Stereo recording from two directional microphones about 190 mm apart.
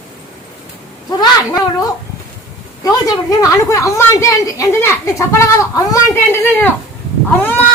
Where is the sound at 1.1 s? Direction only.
20° left (ahead or behind).